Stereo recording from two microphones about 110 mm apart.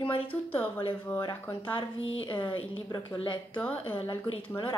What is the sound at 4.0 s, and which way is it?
Speech, 50° left (ahead or behind).